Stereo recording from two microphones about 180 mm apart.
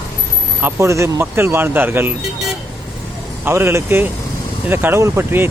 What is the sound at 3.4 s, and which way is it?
Speech, 15° right (ahead or behind).